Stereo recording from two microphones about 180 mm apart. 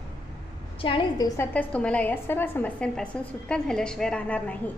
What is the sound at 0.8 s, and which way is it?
Speech, 30° left (ahead or behind).